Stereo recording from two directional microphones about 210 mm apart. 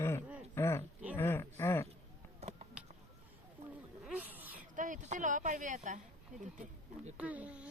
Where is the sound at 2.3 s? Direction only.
30° right (ahead or behind).